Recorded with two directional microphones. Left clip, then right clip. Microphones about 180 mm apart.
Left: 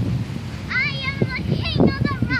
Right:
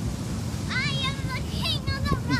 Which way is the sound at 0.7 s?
55° right (ahead or behind).